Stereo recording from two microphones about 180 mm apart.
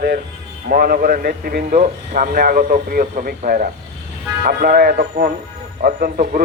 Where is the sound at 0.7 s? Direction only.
55° right (ahead or behind).